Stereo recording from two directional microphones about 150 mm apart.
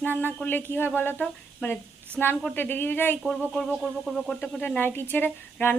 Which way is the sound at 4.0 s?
Centre (ahead or behind).